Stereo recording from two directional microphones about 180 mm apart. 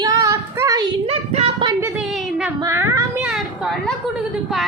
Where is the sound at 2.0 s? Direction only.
Centre (ahead or behind).